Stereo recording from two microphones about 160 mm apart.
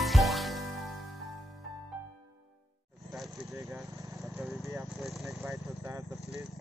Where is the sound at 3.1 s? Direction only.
Centre (ahead or behind).